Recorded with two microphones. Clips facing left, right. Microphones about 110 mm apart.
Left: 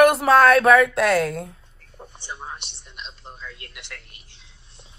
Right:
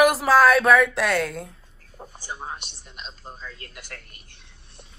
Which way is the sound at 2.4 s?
45° right (ahead or behind).